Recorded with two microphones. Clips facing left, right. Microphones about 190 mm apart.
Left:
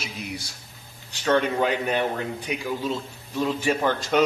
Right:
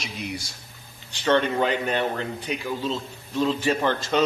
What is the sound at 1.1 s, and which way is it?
A man's voice, 10° left (ahead or behind).